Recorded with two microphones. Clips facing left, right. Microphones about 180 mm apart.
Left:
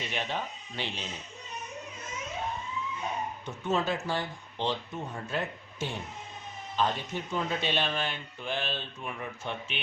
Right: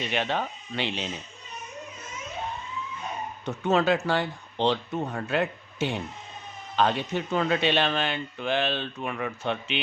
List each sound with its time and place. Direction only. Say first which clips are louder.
0.1 s speech: right 6 dB; 70° right (ahead or behind)
3.4 s speech: right 7 dB; 70° right (ahead or behind)